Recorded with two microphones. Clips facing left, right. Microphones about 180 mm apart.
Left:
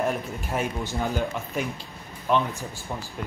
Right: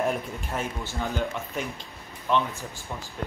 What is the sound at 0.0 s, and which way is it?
Speech, centre (ahead or behind).